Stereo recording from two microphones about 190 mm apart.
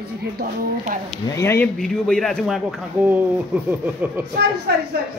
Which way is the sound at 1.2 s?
15° left (ahead or behind).